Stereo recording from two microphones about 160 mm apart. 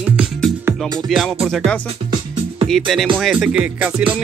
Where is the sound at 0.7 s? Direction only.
15° right (ahead or behind).